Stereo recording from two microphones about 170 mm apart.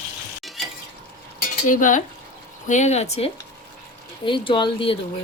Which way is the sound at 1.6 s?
50° left (ahead or behind).